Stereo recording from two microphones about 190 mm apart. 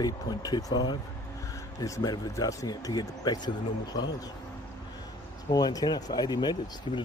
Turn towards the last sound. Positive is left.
turn(degrees=20)  # may be behind; listen again after turning